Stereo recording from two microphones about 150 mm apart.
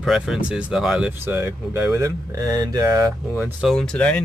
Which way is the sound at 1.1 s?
15° right (ahead or behind).